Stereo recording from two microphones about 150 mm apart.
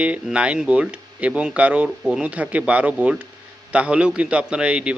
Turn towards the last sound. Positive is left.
turn(degrees=-5)  # may be behind; listen again after turning